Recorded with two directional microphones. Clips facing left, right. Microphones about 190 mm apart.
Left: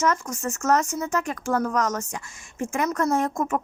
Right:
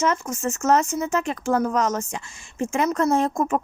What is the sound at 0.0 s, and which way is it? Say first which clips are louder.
Speech: right 1 dB; 25° right (ahead or behind).